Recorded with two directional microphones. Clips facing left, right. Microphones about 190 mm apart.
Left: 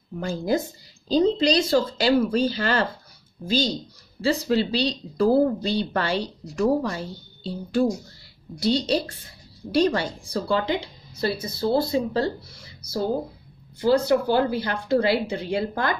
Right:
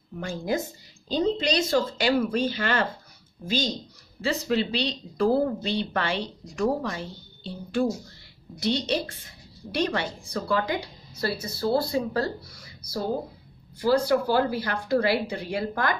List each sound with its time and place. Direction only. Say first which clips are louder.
0.2 s a woman's voice: left 4 dB; 35° left (ahead or behind)